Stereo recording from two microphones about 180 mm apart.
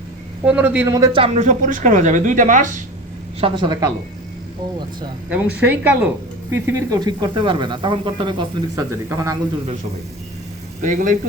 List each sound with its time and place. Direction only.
0.4 s speech: 10° right (ahead or behind)
1.2 s speech: 40° right (ahead or behind)
3.4 s speech: 25° right (ahead or behind)
5.3 s speech: 10° right (ahead or behind)
10.8 s a man's voice: 45° right (ahead or behind)